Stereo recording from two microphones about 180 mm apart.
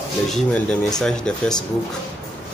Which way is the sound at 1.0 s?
5° left (ahead or behind).